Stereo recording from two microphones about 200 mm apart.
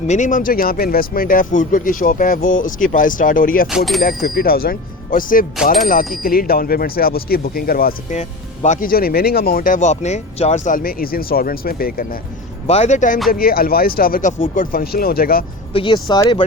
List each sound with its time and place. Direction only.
0.1 s speech: 40° left (ahead or behind)
3.7 s speech: centre (ahead or behind)
4.0 s speech: 50° left (ahead or behind)
12.6 s speech: 30° left (ahead or behind)
13.3 s speech: 50° left (ahead or behind)
15.7 s speech: 25° left (ahead or behind)